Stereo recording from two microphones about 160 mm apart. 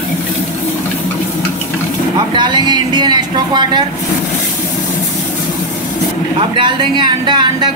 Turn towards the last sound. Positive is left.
turn(degrees=-25)  # may be behind; listen again after turning